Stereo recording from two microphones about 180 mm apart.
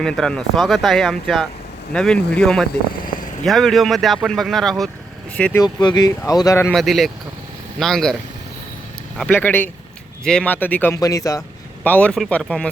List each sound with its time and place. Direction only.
0.0 s speech: 5° left (ahead or behind)
5.6 s speech: 25° left (ahead or behind)
6.7 s speech: centre (ahead or behind)
9.1 s speech: 10° left (ahead or behind)